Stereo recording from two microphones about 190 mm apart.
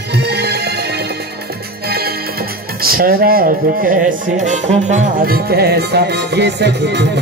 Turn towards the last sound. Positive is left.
turn(degrees=-60)  # may be behind; listen again after turning